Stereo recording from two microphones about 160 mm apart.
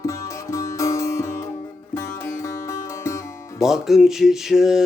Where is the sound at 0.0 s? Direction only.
20° left (ahead or behind).